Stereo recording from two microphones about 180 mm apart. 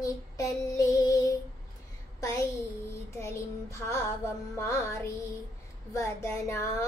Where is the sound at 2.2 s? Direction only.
15° left (ahead or behind).